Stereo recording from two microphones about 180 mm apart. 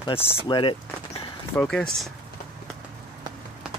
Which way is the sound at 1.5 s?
5° left (ahead or behind).